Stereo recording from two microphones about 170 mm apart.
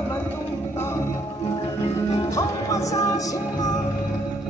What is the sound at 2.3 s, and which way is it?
Music, 20° left (ahead or behind).